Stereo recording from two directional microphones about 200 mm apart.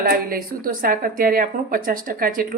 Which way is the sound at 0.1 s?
45° right (ahead or behind).